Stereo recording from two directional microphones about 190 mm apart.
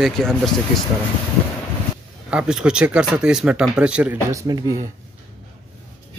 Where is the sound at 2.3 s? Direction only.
5° right (ahead or behind).